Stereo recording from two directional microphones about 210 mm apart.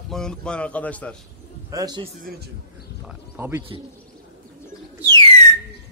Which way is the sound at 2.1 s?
40° right (ahead or behind).